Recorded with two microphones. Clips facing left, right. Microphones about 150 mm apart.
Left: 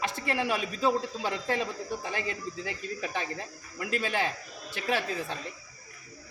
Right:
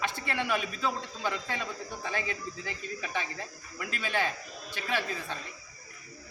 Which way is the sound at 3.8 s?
35° left (ahead or behind).